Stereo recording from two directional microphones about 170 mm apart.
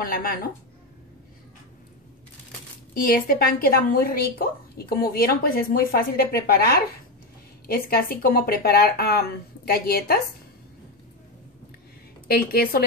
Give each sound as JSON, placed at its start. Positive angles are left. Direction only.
{"t": 0.0, "sound": "a woman's voice", "side_deg": 60}
{"t": 2.9, "sound": "a woman's voice", "side_deg": 55}
{"t": 12.3, "sound": "a woman's voice", "side_deg": 65}